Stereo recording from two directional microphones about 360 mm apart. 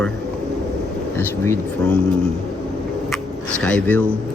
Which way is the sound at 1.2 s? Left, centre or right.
Centre.